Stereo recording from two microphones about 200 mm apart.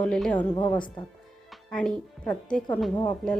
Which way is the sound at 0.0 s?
5° left (ahead or behind).